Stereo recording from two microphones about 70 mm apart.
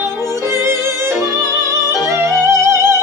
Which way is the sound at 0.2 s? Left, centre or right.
Right.